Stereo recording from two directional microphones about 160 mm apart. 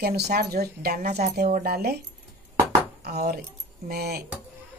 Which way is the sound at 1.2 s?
50° right (ahead or behind).